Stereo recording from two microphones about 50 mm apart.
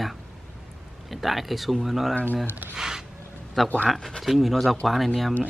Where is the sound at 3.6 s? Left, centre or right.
Centre.